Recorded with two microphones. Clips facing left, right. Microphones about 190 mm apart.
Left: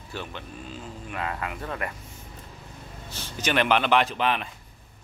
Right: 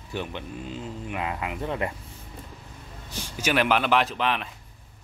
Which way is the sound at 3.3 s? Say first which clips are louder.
Even; 5° right (ahead or behind).